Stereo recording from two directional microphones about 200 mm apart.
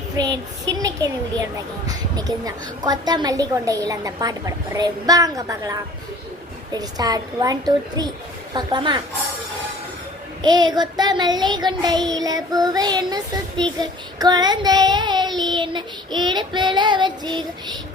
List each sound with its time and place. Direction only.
0.7 s a woman's voice: 20° right (ahead or behind)
6.7 s child singing: 20° right (ahead or behind)
10.4 s child singing: 20° right (ahead or behind)